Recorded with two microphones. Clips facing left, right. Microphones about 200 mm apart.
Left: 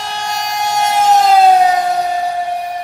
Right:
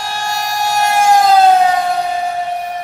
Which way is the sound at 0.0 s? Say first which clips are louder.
Right 1 dB; 20° left (ahead or behind).